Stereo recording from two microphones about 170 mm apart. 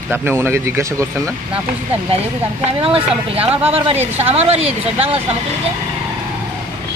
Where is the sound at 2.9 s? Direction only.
35° right (ahead or behind).